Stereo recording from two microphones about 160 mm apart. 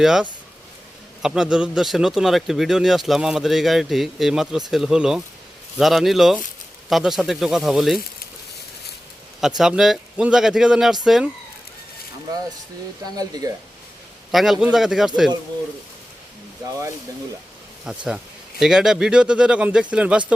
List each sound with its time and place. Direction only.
0.0 s speech: centre (ahead or behind)
9.6 s speech: 5° right (ahead or behind)
13.4 s speech: 25° right (ahead or behind)
14.3 s speech: centre (ahead or behind)
17.8 s speech: 5° right (ahead or behind)